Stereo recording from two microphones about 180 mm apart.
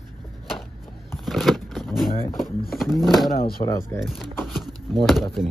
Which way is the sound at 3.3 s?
55° left (ahead or behind).